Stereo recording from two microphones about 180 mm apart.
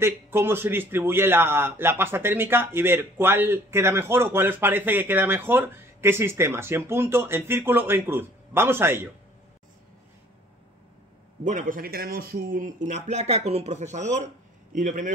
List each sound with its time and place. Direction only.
0.0 s a man's voice: 15° right (ahead or behind)
11.4 s a man's voice: 45° right (ahead or behind)